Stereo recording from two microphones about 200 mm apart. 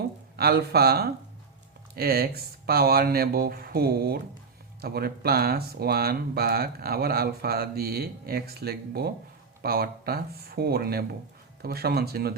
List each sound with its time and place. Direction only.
0.3 s speech: 50° right (ahead or behind)